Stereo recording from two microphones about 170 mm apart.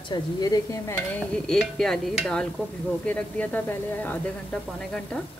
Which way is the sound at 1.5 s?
Centre (ahead or behind).